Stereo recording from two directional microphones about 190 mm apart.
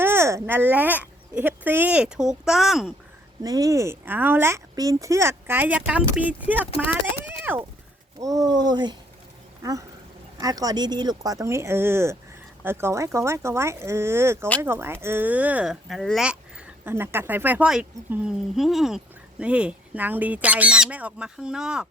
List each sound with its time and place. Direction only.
0.0 s speech: 15° right (ahead or behind)
3.4 s speech: 20° right (ahead or behind)
10.4 s speech: 20° right (ahead or behind); by 21.8 s 5° right (ahead or behind)